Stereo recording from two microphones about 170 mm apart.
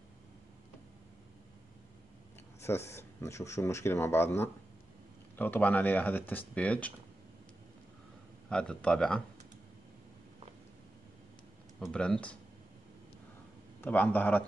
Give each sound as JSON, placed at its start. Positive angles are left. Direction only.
{"t": 2.6, "sound": "speech", "side_deg": 15}
{"t": 8.5, "sound": "speech", "side_deg": 5}
{"t": 11.8, "sound": "speech", "side_deg": 5}
{"t": 13.7, "sound": "speech", "side_deg": 10}